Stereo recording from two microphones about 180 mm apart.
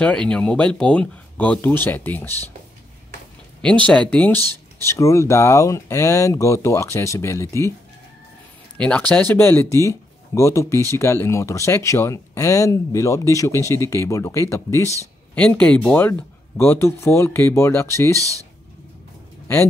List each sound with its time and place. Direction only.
0.0 s speech: 5° left (ahead or behind)
3.6 s speech: 5° left (ahead or behind)
4.4 s a sound: 20° right (ahead or behind)
4.8 s speech: 15° left (ahead or behind)
8.7 s speech: 5° left (ahead or behind)
18.1 s speech: 20° right (ahead or behind)
19.4 s speech: 15° left (ahead or behind)